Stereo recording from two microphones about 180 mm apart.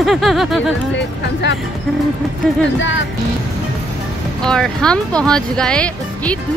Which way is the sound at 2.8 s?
90° left.